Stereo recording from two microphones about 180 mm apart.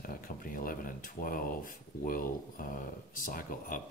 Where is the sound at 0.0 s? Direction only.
50° left (ahead or behind).